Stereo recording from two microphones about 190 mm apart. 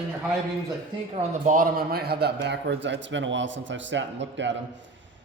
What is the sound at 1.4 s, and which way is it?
A man's voice, 45° right (ahead or behind).